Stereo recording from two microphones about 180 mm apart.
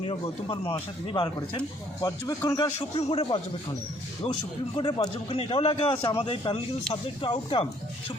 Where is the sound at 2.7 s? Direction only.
30° left (ahead or behind).